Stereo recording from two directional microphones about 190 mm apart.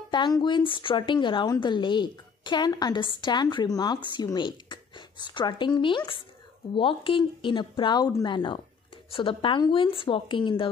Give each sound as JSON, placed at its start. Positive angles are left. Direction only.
{"t": 0.1, "sound": "a woman's voice", "side_deg": 25}